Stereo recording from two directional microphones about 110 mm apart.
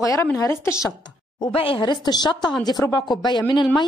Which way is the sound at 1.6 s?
55° left (ahead or behind).